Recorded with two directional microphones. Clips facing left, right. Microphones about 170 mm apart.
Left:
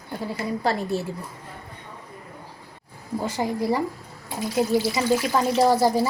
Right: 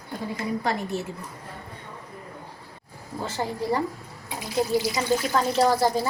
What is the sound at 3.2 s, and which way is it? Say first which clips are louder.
Speech: left 3 dB; 15° left (ahead or behind).